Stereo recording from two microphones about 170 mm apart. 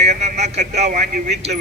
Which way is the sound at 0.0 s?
40° right (ahead or behind).